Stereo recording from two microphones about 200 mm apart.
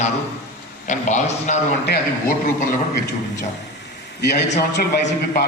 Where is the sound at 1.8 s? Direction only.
45° left (ahead or behind).